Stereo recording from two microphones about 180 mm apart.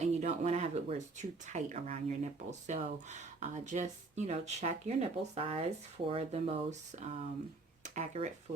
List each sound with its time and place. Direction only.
0.0 s speech: 40° right (ahead or behind)